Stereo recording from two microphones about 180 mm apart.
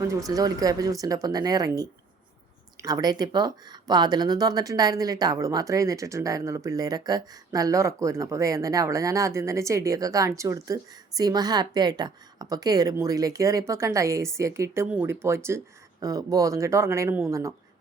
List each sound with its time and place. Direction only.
0.3 s speech: 20° right (ahead or behind)